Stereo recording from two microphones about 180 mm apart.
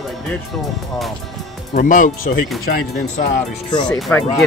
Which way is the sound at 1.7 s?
45° left (ahead or behind).